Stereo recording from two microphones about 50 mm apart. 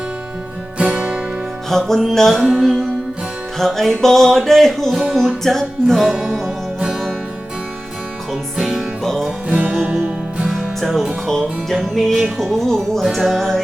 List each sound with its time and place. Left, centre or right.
0.8 s music: right
1.7 s music: centre
8.3 s music: centre
9.0 s music: centre
9.6 s music: right
10.5 s music: centre
13.0 s music: centre